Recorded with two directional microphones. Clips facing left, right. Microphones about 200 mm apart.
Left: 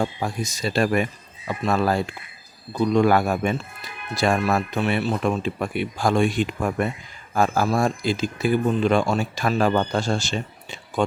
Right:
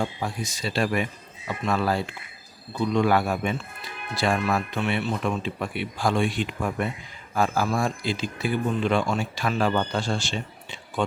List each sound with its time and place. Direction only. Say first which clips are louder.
0.0 s speech: left 3 dB; 45° left (ahead or behind)